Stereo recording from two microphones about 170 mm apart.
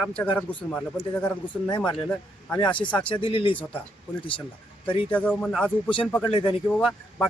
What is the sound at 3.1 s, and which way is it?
Speech, 30° left (ahead or behind).